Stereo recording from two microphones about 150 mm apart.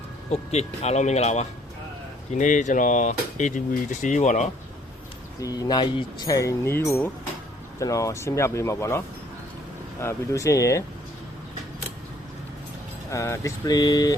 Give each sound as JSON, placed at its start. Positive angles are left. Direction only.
{"t": 0.3, "sound": "speech", "side_deg": 45}
{"t": 5.4, "sound": "speech", "side_deg": 25}
{"t": 13.1, "sound": "speech", "side_deg": 20}